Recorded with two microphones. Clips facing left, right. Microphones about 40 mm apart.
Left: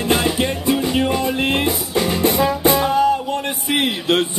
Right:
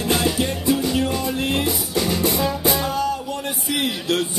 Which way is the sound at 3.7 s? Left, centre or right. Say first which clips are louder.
Left 4 dB; left.